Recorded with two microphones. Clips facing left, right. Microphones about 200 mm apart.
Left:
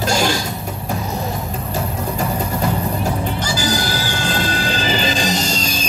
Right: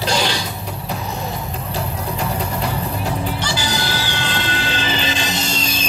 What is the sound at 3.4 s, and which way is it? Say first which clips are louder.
Music: left 3 dB; 45° left (ahead or behind).